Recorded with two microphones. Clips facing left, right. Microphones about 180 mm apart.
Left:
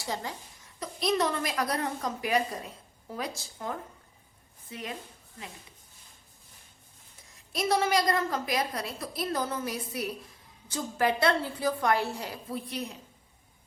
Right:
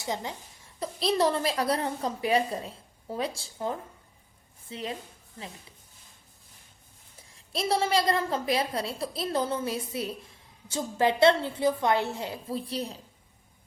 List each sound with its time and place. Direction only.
0.0 s a woman's voice: 20° right (ahead or behind)
7.3 s a woman's voice: 30° right (ahead or behind)